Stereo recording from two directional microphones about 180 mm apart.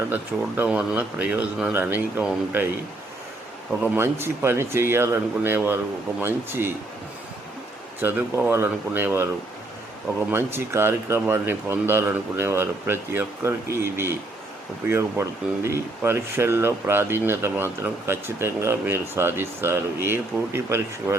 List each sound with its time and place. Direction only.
0.1 s speech: 10° right (ahead or behind)
3.9 s speech: 15° right (ahead or behind)
8.0 s speech: 10° right (ahead or behind)
10.3 s speech: 15° right (ahead or behind)